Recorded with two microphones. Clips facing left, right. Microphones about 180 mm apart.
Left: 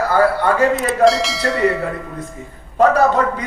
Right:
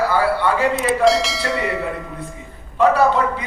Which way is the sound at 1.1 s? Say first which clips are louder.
Left 2 dB; centre (ahead or behind).